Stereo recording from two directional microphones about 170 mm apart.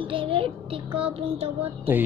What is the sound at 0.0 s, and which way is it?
Child singing, 30° right (ahead or behind).